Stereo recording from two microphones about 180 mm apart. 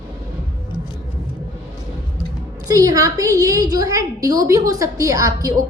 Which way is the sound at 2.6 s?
20° right (ahead or behind).